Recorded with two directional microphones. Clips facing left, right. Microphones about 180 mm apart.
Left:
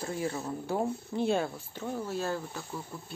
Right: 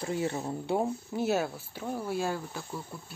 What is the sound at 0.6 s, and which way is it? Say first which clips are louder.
Speech: right 2 dB; 20° right (ahead or behind).